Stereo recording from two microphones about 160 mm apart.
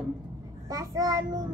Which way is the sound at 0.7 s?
20° right (ahead or behind).